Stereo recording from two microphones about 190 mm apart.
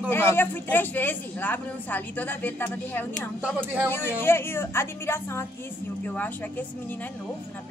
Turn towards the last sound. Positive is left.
turn(degrees=10)  # may be behind; listen again after turning